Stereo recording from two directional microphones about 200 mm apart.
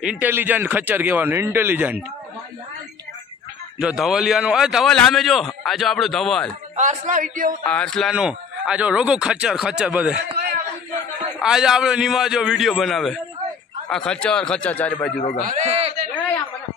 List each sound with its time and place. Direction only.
0.0 s speech: 5° right (ahead or behind)
3.8 s a man's voice: centre (ahead or behind)
6.8 s speech: 40° right (ahead or behind)
7.6 s a man's voice: 5° left (ahead or behind)
11.4 s a man's voice: 5° right (ahead or behind)
15.4 s a man's voice: 35° right (ahead or behind)